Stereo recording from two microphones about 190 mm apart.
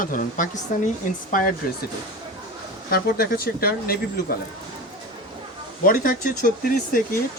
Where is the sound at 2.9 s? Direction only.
50° left (ahead or behind).